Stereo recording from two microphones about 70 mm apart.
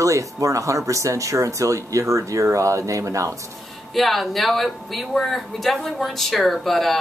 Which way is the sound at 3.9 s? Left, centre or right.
Centre.